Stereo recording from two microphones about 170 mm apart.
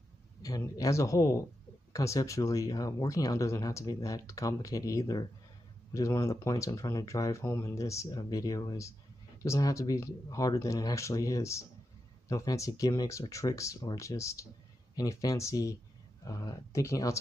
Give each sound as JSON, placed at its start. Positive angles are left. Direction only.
{"t": 0.4, "sound": "speech", "side_deg": 20}